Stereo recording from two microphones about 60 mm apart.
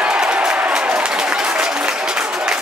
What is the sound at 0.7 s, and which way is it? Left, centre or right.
Applause, centre.